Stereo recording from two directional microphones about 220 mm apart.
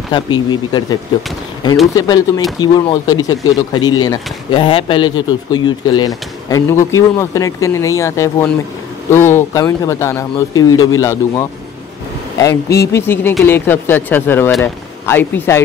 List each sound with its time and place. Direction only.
0.1 s speech: 20° left (ahead or behind)
2.0 s speech: 15° left (ahead or behind)